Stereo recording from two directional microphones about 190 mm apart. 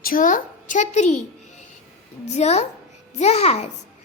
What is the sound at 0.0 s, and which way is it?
A child's voice, 45° left (ahead or behind).